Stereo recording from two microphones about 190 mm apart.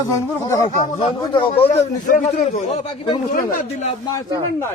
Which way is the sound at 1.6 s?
40° left (ahead or behind).